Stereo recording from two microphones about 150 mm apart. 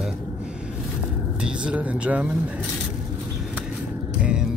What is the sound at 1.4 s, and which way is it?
Speech, 10° right (ahead or behind).